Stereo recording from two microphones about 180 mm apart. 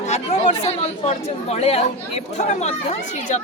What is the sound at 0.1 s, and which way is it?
Speech, 40° left (ahead or behind).